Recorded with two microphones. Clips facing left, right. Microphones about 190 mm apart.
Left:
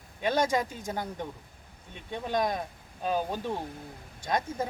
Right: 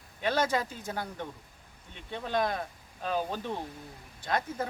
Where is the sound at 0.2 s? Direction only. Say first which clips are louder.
Left 2 dB; 15° left (ahead or behind).